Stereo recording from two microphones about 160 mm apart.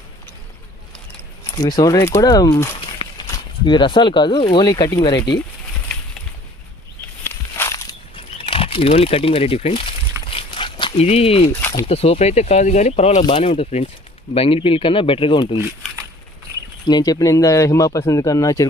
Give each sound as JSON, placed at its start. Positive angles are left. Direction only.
{"t": 1.5, "sound": "speech", "side_deg": 25}
{"t": 7.3, "sound": "a sound", "side_deg": 15}
{"t": 8.1, "sound": "crumpling", "side_deg": 35}
{"t": 10.9, "sound": "speech", "side_deg": 40}
{"t": 16.8, "sound": "speech", "side_deg": 25}